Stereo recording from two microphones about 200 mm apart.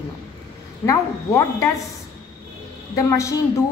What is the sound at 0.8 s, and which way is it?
Speech, 15° left (ahead or behind).